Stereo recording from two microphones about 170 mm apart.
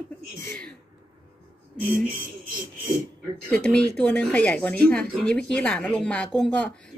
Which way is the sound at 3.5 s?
5° left (ahead or behind).